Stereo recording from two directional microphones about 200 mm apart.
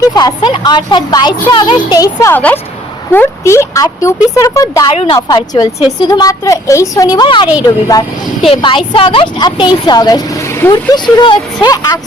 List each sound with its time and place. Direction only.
0.2 s a woman's voice: 20° left (ahead or behind)